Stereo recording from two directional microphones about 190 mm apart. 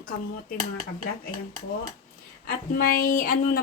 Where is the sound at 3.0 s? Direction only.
50° left (ahead or behind).